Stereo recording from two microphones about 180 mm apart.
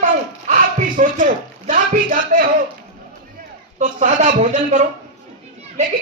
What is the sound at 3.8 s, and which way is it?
A man's voice, 45° right (ahead or behind).